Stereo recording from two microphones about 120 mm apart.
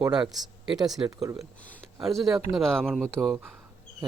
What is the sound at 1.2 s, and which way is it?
Speech, 25° right (ahead or behind).